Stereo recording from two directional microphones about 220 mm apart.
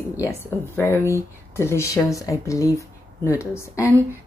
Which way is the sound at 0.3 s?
10° left (ahead or behind).